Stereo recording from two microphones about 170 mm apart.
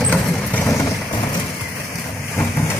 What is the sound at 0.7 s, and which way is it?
Vehicle, 20° left (ahead or behind).